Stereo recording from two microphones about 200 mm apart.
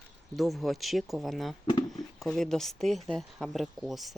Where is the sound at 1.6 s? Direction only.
20° left (ahead or behind).